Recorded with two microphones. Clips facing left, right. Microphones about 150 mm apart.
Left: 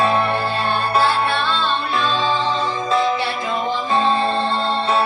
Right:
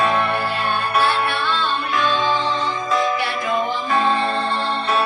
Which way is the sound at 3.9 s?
25° left (ahead or behind).